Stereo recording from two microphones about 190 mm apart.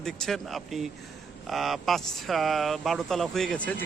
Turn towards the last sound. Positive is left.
turn(degrees=5)  # may be behind; listen again after turning